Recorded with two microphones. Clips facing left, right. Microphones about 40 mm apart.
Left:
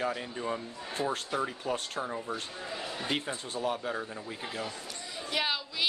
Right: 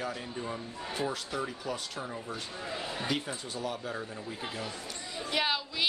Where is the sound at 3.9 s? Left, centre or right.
Centre.